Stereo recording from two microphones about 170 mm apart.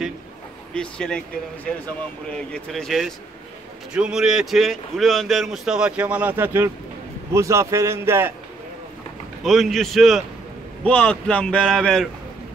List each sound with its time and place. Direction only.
0.7 s a man's voice: 5° left (ahead or behind); by 8.3 s 15° right (ahead or behind)
9.4 s a man's voice: centre (ahead or behind)